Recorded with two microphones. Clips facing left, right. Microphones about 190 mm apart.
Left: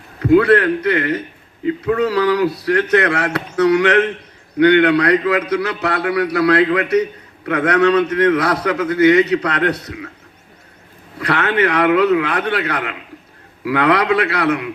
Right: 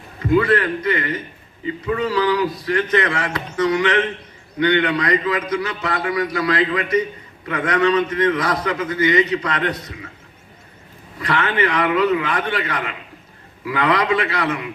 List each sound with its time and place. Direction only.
0.2 s a man's voice: 65° left (ahead or behind)
11.2 s a man's voice: 70° left (ahead or behind)